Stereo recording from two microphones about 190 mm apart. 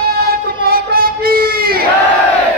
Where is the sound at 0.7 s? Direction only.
50° right (ahead or behind).